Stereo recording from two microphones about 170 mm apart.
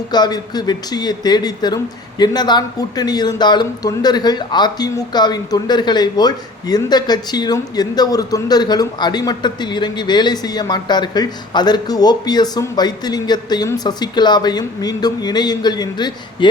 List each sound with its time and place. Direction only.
0.1 s speech: 25° left (ahead or behind)